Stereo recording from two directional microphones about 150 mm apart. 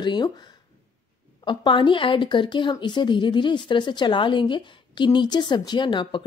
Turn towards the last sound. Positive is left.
turn(degrees=30)  # may be behind; listen again after turning